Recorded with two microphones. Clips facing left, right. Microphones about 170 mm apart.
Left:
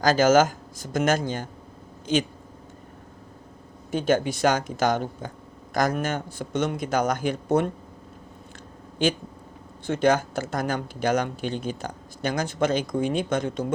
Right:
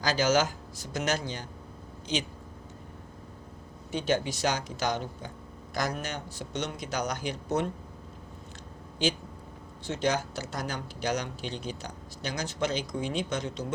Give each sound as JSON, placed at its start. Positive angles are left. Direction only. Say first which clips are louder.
{"t": 0.0, "sound": "speech", "louder": "left 7 dB", "side_deg": 50}
{"t": 3.9, "sound": "speech", "louder": "left 6 dB", "side_deg": 50}
{"t": 9.8, "sound": "speech", "louder": "left 7 dB", "side_deg": 55}